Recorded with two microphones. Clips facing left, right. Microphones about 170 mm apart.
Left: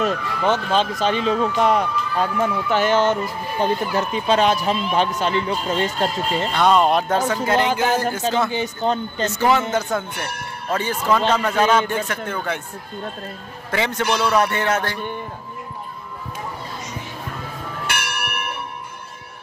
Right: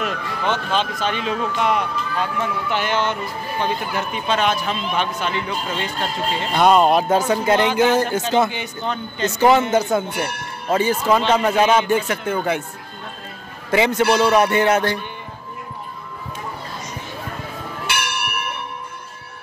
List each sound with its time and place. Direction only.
0.0 s speech: 35° left (ahead or behind)
6.5 s music: 10° right (ahead or behind)
7.5 s speech: 40° left (ahead or behind)
9.4 s music: 20° right (ahead or behind)
13.7 s a man's voice: 15° right (ahead or behind)
14.1 s music: 15° right (ahead or behind)